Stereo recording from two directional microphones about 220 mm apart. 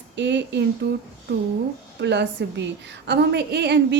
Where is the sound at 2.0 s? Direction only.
50° right (ahead or behind).